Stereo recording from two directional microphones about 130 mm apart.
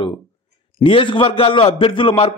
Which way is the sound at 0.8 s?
40° left (ahead or behind).